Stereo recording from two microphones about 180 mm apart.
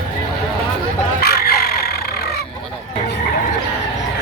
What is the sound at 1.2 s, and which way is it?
Fowl, 60° left (ahead or behind).